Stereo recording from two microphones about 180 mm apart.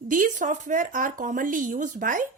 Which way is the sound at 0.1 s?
45° right (ahead or behind).